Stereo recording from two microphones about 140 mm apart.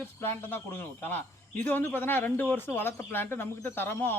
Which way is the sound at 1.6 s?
15° left (ahead or behind).